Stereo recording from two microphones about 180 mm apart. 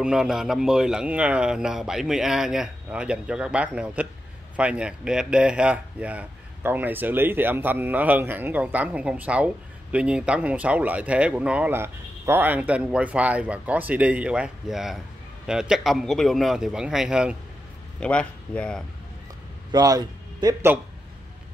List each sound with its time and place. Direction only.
0.0 s a man's voice: 5° right (ahead or behind)
18.0 s a man's voice: 5° left (ahead or behind)
19.7 s speech: 20° right (ahead or behind)